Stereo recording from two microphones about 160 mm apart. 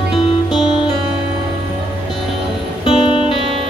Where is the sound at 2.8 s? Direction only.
35° left (ahead or behind).